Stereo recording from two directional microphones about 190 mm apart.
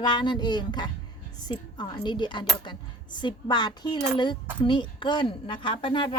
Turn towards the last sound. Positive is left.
turn(degrees=25)  # may be behind; listen again after turning